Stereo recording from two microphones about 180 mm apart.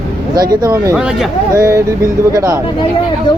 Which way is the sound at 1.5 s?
15° right (ahead or behind).